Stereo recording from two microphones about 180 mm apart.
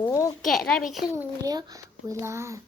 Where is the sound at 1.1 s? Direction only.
20° right (ahead or behind).